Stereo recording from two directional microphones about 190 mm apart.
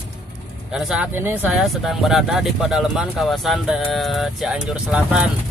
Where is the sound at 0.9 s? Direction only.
10° right (ahead or behind).